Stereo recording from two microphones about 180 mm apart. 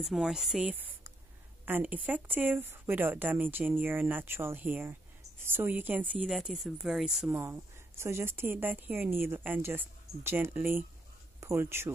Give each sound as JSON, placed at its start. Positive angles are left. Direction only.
{"t": 0.0, "sound": "speech", "side_deg": -5}
{"t": 7.3, "sound": "speech", "side_deg": -15}